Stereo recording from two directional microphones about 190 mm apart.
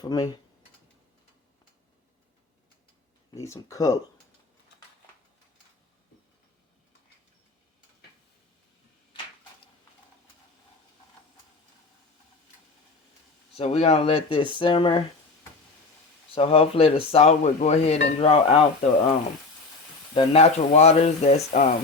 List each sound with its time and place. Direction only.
0.0 s speech: 20° left (ahead or behind)
3.3 s speech: 15° left (ahead or behind)
13.5 s speech: 35° left (ahead or behind)
16.3 s speech: 30° left (ahead or behind)
20.1 s speech: 35° left (ahead or behind)